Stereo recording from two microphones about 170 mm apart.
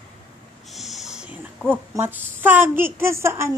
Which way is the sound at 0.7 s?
Centre (ahead or behind).